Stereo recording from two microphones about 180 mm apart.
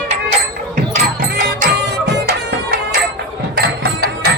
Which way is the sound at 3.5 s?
60° right (ahead or behind).